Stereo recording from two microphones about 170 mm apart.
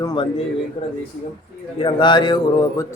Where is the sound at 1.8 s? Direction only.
30° left (ahead or behind).